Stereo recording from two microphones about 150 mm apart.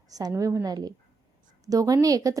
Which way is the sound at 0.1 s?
25° right (ahead or behind).